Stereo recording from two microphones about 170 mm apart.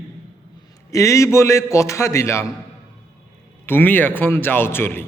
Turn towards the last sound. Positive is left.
turn(degrees=15)  # may be behind; listen again after turning